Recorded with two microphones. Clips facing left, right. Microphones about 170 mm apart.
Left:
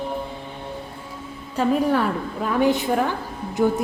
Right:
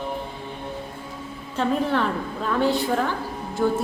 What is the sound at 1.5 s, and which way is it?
A woman's voice, 10° left (ahead or behind).